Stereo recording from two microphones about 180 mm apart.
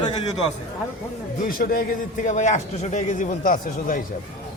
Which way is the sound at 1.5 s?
50° left (ahead or behind).